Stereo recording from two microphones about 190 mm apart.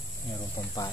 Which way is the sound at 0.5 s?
20° left (ahead or behind).